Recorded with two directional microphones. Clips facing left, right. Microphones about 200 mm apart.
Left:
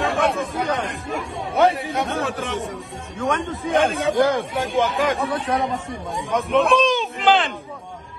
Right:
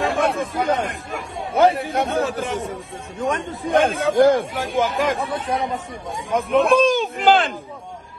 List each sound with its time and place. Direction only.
0.0 s speech: centre (ahead or behind)
4.2 s speech: 50° right (ahead or behind)
4.6 s speech: centre (ahead or behind)